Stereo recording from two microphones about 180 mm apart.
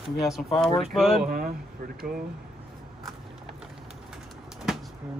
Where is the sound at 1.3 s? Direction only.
50° right (ahead or behind).